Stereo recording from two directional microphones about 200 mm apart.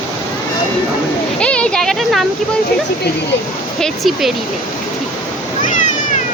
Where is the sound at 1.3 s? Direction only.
5° left (ahead or behind).